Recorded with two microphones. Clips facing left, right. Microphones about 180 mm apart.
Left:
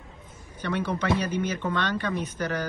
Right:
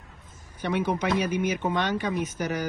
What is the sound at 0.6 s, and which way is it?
A man's voice, 15° right (ahead or behind).